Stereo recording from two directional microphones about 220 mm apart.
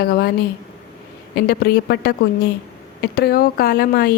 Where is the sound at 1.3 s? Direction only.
45° left (ahead or behind).